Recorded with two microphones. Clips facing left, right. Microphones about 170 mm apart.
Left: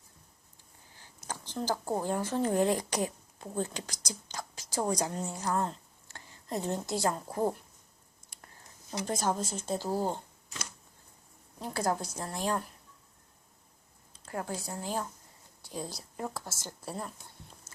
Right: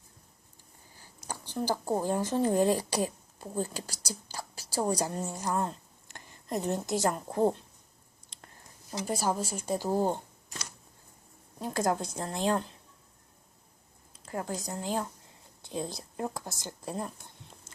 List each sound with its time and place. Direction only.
1.3 s speech: 10° right (ahead or behind)
4.1 s whispering: 10° right (ahead or behind)
4.7 s a woman's voice: 10° right (ahead or behind)
9.0 s speech: 5° right (ahead or behind)
11.6 s a woman's voice: 20° right (ahead or behind)
14.5 s a woman's voice: 10° left (ahead or behind)
15.6 s a woman's voice: 20° right (ahead or behind)